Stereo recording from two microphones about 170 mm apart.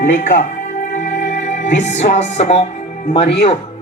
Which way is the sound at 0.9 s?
45° left (ahead or behind).